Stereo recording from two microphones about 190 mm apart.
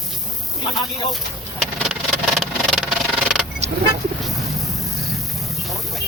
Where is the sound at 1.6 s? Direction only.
Centre (ahead or behind).